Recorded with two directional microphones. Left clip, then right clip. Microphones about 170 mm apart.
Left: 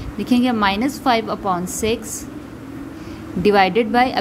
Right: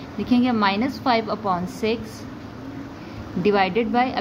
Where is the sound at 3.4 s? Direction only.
30° left (ahead or behind).